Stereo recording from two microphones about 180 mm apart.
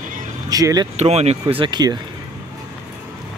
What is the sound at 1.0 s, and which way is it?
Speech, 35° right (ahead or behind).